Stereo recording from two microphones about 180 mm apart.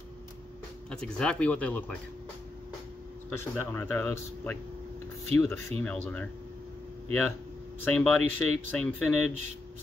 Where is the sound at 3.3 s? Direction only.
10° left (ahead or behind).